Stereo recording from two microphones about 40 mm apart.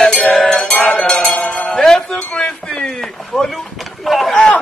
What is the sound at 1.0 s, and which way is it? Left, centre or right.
Cowbell, centre.